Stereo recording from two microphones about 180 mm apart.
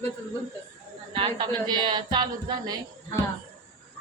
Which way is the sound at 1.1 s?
25° right (ahead or behind).